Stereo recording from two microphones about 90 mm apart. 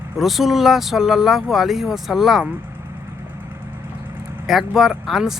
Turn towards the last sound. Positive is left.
turn(degrees=0)  # may be behind; listen again after turning